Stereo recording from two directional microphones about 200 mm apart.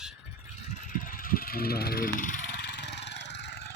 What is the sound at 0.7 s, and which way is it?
Vehicle, 40° left (ahead or behind).